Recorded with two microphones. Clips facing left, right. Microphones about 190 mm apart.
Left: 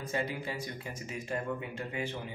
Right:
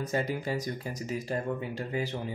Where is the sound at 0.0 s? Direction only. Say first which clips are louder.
Right 4 dB; 40° right (ahead or behind).